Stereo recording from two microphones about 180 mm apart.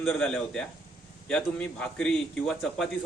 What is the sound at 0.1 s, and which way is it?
A man's voice, 5° left (ahead or behind).